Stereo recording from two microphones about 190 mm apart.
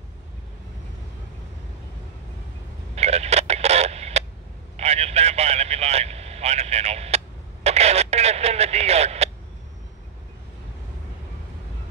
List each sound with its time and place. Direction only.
3.0 s a sound: 35° right (ahead or behind)
4.7 s vehicle: 35° right (ahead or behind)
7.6 s speech: 35° right (ahead or behind)